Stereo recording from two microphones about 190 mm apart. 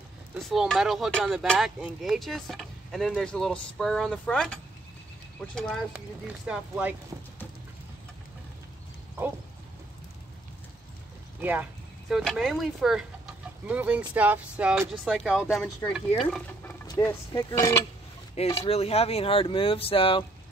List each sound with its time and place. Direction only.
0.4 s speech: centre (ahead or behind)
12.1 s speech: centre (ahead or behind)
16.8 s speech: 20° left (ahead or behind)
18.6 s speech: 30° left (ahead or behind)